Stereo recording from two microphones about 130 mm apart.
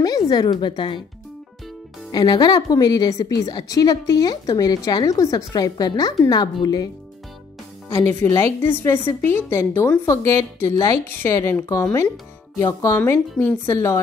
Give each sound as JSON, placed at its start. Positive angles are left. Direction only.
{"t": 0.3, "sound": "speech", "side_deg": 30}
{"t": 2.1, "sound": "a woman's voice", "side_deg": 30}
{"t": 7.9, "sound": "a woman's voice", "side_deg": 15}